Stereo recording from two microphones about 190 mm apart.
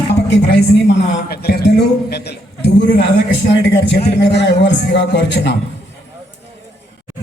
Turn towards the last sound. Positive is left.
turn(degrees=65)  # may be behind; listen again after turning